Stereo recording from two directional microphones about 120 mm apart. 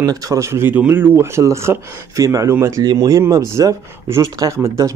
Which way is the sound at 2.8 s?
35° right (ahead or behind).